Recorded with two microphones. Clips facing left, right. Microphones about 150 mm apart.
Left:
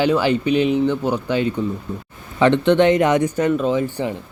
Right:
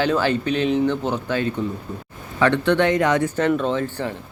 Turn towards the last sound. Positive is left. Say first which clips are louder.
# left 3 dB
turn(degrees=15)  # may be behind; listen again after turning